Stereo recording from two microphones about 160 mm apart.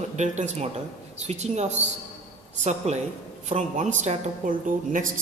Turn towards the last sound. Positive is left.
turn(degrees=-55)  # may be behind; listen again after turning